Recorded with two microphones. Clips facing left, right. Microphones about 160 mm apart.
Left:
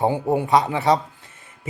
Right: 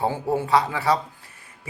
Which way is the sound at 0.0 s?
20° left (ahead or behind).